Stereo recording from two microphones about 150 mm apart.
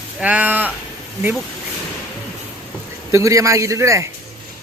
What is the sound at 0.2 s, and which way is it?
Speech, 10° right (ahead or behind).